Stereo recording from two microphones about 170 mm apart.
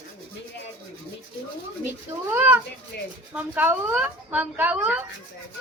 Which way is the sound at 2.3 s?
10° right (ahead or behind).